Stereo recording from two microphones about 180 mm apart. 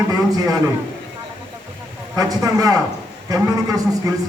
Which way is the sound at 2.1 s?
20° right (ahead or behind).